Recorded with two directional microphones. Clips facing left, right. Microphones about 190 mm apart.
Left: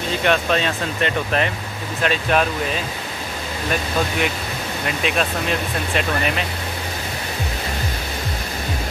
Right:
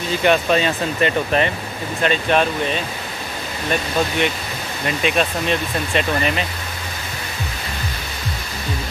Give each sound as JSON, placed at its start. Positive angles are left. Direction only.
{"t": 0.2, "sound": "speech", "side_deg": 0}
{"t": 4.8, "sound": "speech", "side_deg": 0}